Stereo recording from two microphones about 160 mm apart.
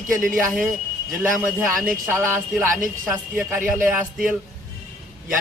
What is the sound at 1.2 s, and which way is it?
A man's voice, 5° right (ahead or behind).